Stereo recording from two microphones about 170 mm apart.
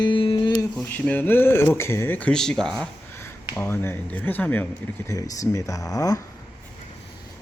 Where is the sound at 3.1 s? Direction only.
15° left (ahead or behind).